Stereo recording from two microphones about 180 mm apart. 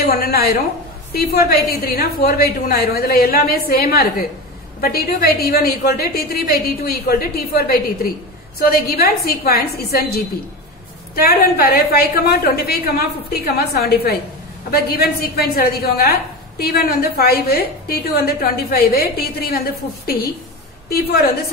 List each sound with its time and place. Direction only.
0.0 s a woman's voice: 60° left (ahead or behind)